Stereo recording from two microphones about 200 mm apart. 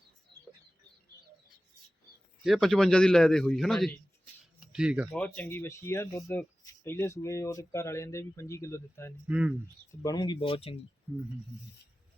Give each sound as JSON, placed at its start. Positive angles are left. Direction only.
{"t": 2.4, "sound": "a man's voice", "side_deg": 0}
{"t": 5.1, "sound": "speech", "side_deg": 5}
{"t": 9.2, "sound": "a man's voice", "side_deg": -5}
{"t": 10.0, "sound": "speech", "side_deg": 20}